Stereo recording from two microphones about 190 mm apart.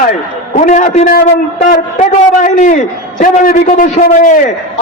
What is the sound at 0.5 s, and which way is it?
A man's voice, 45° left (ahead or behind).